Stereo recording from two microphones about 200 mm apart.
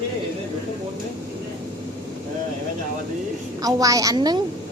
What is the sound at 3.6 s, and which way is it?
Speech, 15° right (ahead or behind).